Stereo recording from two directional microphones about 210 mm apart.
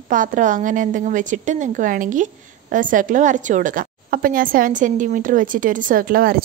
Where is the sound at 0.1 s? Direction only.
40° right (ahead or behind).